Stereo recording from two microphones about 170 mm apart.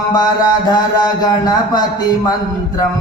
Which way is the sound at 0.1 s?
25° left (ahead or behind).